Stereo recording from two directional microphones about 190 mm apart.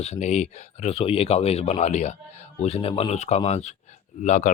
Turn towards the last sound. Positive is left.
turn(degrees=40)  # may be behind; listen again after turning